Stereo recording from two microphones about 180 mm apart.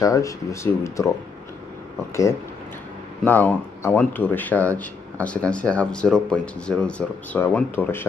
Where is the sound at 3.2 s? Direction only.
10° left (ahead or behind).